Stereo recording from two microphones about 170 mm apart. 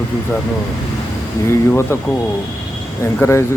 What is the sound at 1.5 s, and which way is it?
Speech, 15° left (ahead or behind).